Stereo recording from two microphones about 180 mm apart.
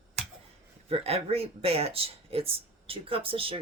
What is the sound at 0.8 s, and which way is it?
Speech, 35° right (ahead or behind).